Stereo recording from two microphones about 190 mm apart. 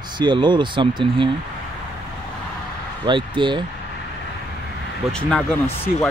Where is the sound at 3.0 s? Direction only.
25° right (ahead or behind).